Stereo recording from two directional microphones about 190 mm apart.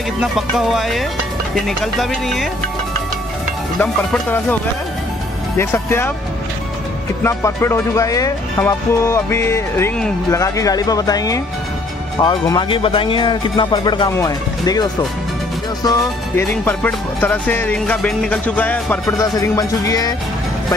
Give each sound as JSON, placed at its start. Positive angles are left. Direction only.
{"t": 0.2, "sound": "speech", "side_deg": 0}
{"t": 3.8, "sound": "speech", "side_deg": 5}
{"t": 5.6, "sound": "speech", "side_deg": 10}
{"t": 7.2, "sound": "speech", "side_deg": 15}